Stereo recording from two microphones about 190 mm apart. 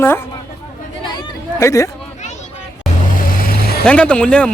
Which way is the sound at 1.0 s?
25° left (ahead or behind).